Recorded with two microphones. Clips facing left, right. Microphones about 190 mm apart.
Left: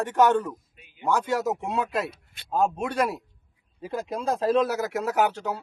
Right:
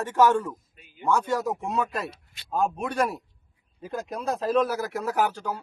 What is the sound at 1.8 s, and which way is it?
Speech, 55° left (ahead or behind).